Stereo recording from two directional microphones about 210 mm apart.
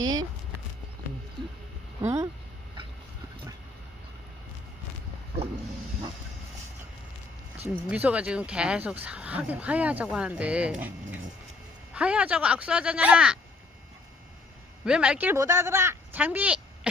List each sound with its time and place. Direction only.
0.0 s a sound: 20° right (ahead or behind)
2.0 s speech: 15° right (ahead or behind)
7.9 s speech: 5° right (ahead or behind)
11.9 s speech: 5° right (ahead or behind)
14.8 s speech: 5° right (ahead or behind)